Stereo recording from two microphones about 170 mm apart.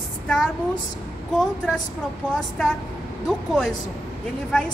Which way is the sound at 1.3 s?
5° left (ahead or behind).